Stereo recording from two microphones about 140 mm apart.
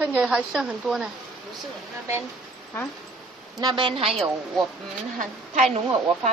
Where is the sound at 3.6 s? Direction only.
35° right (ahead or behind).